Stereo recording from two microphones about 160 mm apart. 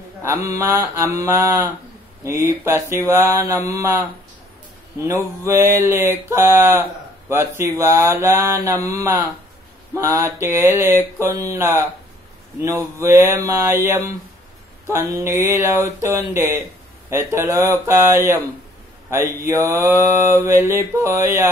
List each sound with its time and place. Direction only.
0.2 s mantra: 20° right (ahead or behind)
5.0 s mantra: 20° right (ahead or behind)
19.0 s speech: 20° right (ahead or behind)
19.6 s mantra: 15° right (ahead or behind)